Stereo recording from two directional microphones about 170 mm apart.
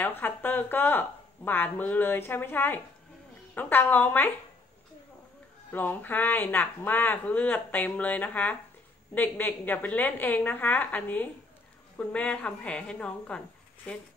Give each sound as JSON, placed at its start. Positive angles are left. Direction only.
{"t": 0.0, "sound": "speech", "side_deg": 10}
{"t": 5.7, "sound": "speech", "side_deg": 10}